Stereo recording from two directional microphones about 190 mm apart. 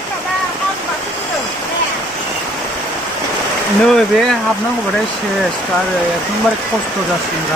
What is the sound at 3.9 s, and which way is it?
Speech, centre (ahead or behind).